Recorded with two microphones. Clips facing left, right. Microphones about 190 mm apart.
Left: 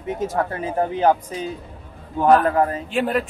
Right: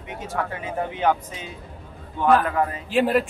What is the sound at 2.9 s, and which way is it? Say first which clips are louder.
Speech: right 2 dB; 5° right (ahead or behind).